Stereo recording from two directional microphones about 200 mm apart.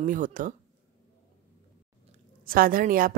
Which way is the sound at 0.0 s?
40° right (ahead or behind).